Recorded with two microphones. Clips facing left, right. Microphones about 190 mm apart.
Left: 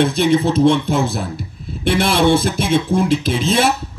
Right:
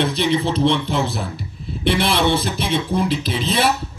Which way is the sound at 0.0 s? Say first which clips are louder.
Left 4 dB; 45° left (ahead or behind).